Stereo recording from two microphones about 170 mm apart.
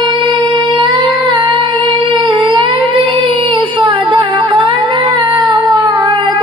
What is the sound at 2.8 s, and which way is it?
Music, 30° right (ahead or behind).